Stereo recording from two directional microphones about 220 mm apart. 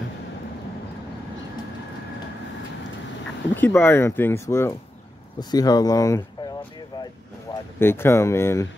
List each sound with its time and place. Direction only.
3.5 s speech: 10° left (ahead or behind)
7.5 s a sound: 20° left (ahead or behind)
7.8 s speech: 10° left (ahead or behind)